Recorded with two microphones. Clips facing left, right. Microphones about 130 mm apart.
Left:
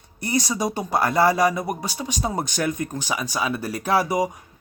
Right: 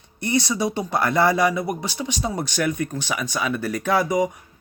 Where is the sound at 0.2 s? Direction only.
40° left (ahead or behind).